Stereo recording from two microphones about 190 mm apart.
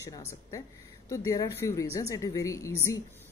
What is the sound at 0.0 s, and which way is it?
Speech, 15° left (ahead or behind).